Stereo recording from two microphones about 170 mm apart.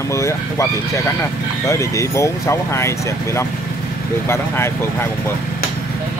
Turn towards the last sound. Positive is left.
turn(degrees=15)  # may be behind; listen again after turning